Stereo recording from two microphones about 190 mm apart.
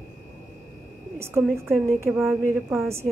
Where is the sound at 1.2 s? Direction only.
15° right (ahead or behind).